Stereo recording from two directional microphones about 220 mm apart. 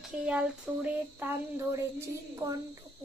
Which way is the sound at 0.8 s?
10° right (ahead or behind).